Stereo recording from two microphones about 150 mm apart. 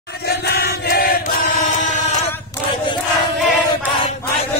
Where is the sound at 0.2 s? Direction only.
90° left; by 1.7 s 70° left (ahead or behind).